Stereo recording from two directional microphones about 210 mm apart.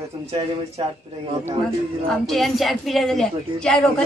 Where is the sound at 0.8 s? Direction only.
25° right (ahead or behind).